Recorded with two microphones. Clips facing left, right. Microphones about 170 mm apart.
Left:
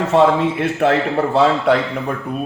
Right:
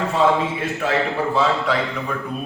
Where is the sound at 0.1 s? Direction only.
65° left (ahead or behind).